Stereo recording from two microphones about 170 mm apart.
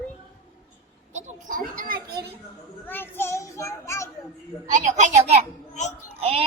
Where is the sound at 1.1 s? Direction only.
45° right (ahead or behind).